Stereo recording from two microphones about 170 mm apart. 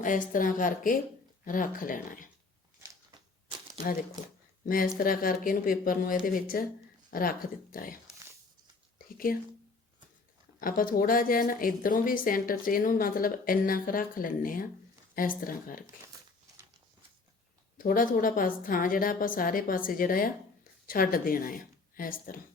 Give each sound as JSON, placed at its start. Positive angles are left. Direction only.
{"t": 0.0, "sound": "a woman's voice", "side_deg": 50}
{"t": 4.6, "sound": "speech", "side_deg": 55}
{"t": 9.1, "sound": "speech", "side_deg": 55}
{"t": 10.6, "sound": "speech", "side_deg": 55}
{"t": 17.7, "sound": "speech", "side_deg": 55}